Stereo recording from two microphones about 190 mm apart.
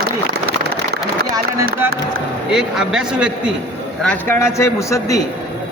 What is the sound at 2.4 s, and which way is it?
Speech, 5° right (ahead or behind).